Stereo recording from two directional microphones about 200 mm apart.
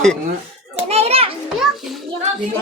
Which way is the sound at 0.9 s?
30° right (ahead or behind).